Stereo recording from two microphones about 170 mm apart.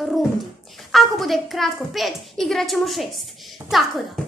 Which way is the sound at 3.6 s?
15° right (ahead or behind).